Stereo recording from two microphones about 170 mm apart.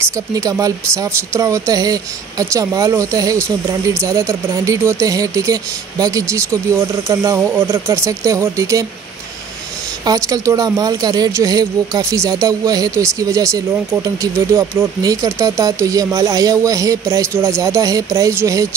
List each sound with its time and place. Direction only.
0.0 s speech: 20° right (ahead or behind)
10.0 s speech: 20° right (ahead or behind)